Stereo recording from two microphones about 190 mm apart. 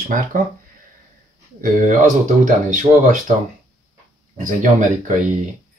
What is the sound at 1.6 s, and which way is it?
Speech, 45° right (ahead or behind).